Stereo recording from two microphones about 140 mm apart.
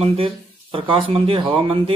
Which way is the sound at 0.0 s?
40° right (ahead or behind).